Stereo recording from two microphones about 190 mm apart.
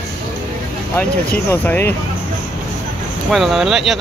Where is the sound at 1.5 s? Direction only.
10° left (ahead or behind).